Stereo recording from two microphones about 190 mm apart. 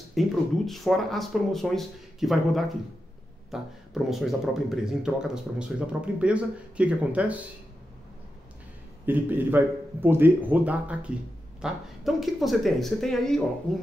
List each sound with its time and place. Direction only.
0.2 s speech: centre (ahead or behind)
9.0 s speech: 10° right (ahead or behind)